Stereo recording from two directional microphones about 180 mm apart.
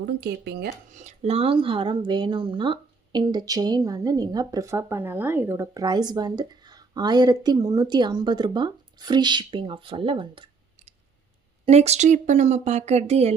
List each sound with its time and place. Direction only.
0.0 s speech: 65° right (ahead or behind)
0.9 s speech: 40° right (ahead or behind)